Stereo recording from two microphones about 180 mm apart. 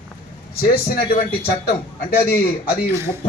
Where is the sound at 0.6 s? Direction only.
55° left (ahead or behind).